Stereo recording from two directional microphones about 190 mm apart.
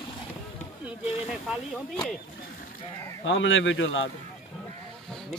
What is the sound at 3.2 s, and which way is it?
Speech, 80° left.